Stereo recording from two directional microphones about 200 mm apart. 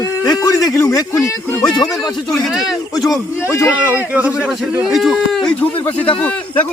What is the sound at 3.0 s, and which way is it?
Speech, 15° left (ahead or behind).